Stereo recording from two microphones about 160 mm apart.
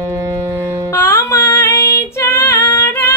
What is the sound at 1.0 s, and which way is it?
Female singing, 15° left (ahead or behind).